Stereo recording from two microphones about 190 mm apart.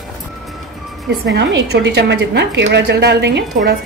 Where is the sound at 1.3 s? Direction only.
60° right (ahead or behind).